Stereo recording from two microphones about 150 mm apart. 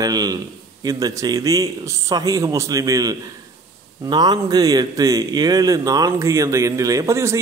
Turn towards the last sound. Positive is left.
turn(degrees=-20)  # may be behind; listen again after turning